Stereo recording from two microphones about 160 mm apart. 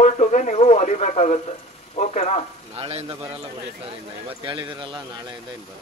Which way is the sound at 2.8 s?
40° right (ahead or behind).